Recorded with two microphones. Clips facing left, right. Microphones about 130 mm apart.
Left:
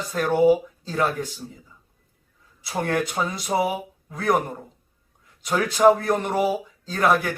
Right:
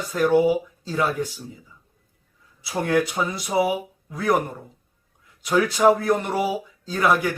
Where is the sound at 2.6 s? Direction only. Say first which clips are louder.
Right 3 dB; 5° right (ahead or behind).